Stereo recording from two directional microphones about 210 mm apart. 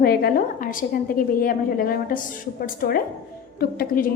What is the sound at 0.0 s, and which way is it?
A woman's voice, 45° left (ahead or behind).